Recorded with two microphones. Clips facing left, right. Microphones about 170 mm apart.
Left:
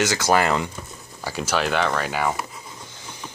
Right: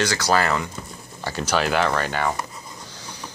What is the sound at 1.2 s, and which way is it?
Speech, 5° left (ahead or behind).